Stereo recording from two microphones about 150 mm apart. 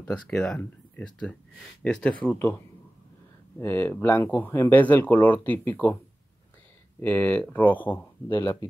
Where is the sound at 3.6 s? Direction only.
15° left (ahead or behind).